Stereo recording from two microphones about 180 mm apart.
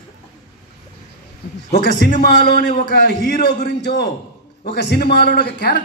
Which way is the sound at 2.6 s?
65° left (ahead or behind).